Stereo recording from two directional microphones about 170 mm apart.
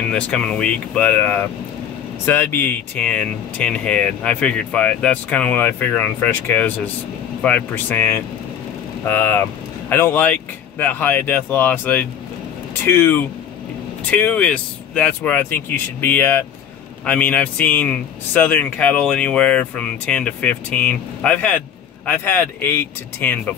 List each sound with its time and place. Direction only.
0.1 s speech: 5° left (ahead or behind)